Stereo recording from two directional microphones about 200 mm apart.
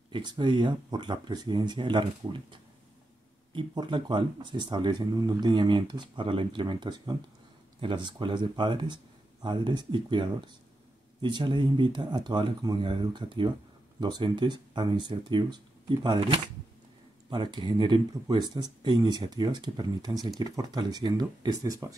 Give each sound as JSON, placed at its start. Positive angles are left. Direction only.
{"t": 0.1, "sound": "speech", "side_deg": -20}